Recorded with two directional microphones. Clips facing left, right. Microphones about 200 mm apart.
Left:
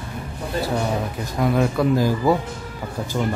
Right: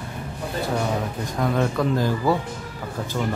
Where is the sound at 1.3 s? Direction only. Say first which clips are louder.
Left 3 dB; 10° left (ahead or behind).